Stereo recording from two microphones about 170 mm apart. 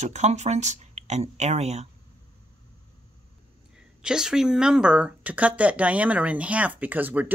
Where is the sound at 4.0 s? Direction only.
5° right (ahead or behind).